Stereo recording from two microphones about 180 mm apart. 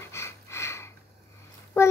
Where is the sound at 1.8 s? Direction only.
15° left (ahead or behind).